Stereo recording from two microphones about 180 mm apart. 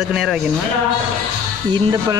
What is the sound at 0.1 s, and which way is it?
Speech, centre (ahead or behind).